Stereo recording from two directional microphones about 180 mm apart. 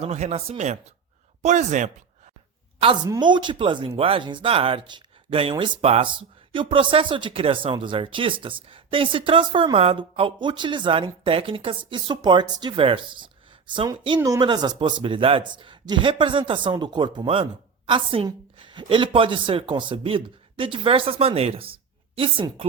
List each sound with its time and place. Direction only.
0.0 s speech: 35° right (ahead or behind)
2.8 s speech: 25° right (ahead or behind)